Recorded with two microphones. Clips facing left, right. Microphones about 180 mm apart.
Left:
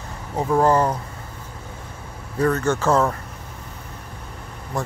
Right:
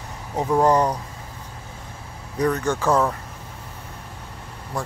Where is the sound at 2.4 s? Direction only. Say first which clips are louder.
Left 2 dB; 15° right (ahead or behind).